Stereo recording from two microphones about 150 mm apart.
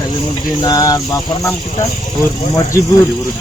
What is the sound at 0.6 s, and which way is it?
Speech, 25° left (ahead or behind).